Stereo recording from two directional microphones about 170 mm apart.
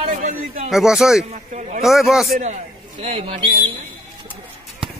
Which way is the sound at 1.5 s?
45° right (ahead or behind).